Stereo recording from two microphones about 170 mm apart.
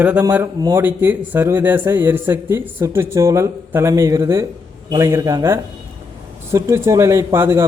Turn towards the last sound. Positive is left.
turn(degrees=-15)  # may be behind; listen again after turning